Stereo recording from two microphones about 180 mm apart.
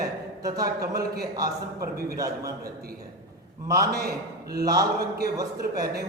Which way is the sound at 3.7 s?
20° right (ahead or behind).